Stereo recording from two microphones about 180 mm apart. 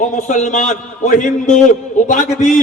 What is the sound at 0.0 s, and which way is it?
A man's voice, 45° left (ahead or behind).